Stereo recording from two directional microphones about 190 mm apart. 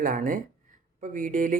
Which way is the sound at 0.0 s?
45° right (ahead or behind).